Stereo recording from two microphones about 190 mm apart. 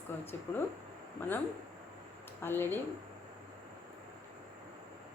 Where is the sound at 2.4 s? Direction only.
10° left (ahead or behind).